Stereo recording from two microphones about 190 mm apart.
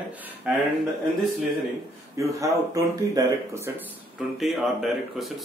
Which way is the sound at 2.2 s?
15° right (ahead or behind).